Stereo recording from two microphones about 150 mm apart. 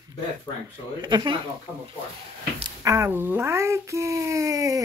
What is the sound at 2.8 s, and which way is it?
Speech, 20° right (ahead or behind).